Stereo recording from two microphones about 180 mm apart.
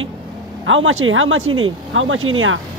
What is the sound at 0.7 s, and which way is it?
Speech, 90° right.